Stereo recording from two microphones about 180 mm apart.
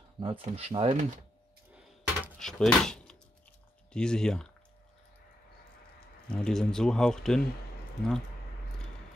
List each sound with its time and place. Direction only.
0.2 s speech: 30° right (ahead or behind)
1.7 s a sound: 5° right (ahead or behind)
3.9 s speech: 5° left (ahead or behind)
6.2 s speech: 5° left (ahead or behind)